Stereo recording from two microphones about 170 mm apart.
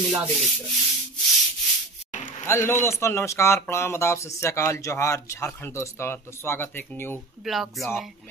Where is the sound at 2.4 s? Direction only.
15° left (ahead or behind).